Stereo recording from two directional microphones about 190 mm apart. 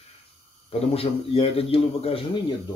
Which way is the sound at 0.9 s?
30° left (ahead or behind).